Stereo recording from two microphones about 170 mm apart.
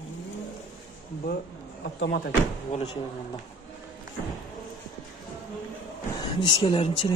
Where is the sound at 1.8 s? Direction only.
70° left (ahead or behind).